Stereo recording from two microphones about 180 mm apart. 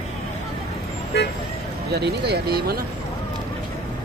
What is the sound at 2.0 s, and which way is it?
Speech, 65° right (ahead or behind).